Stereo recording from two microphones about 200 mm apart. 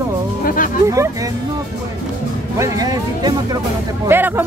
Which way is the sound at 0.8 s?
15° right (ahead or behind).